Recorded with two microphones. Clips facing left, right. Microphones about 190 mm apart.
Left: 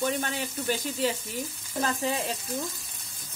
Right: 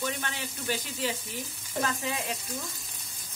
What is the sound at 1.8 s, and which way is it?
Frying, 35° left (ahead or behind).